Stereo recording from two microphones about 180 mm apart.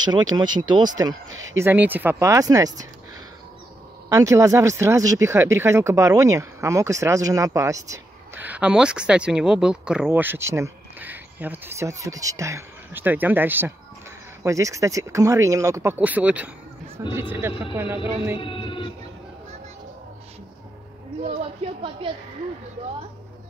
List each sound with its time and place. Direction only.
0.0 s speech: 25° right (ahead or behind)
1.3 s speech: 90° right
1.6 s speech: 10° right (ahead or behind)
4.1 s speech: 15° right (ahead or behind)
18.4 s speech: 30° left (ahead or behind)
21.6 s a woman's voice: 35° right (ahead or behind)